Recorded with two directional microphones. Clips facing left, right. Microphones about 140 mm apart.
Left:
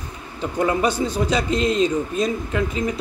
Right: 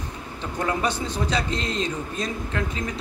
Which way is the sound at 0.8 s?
10° left (ahead or behind).